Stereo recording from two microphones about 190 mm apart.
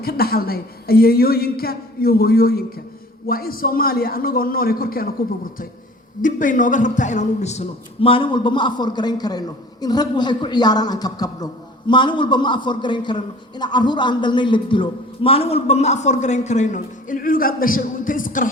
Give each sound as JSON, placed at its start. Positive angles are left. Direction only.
{"t": 0.0, "sound": "a woman's voice", "side_deg": 55}
{"t": 6.2, "sound": "a man's voice", "side_deg": 45}